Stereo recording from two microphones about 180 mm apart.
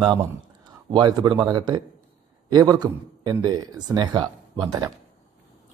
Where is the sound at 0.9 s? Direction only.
25° right (ahead or behind).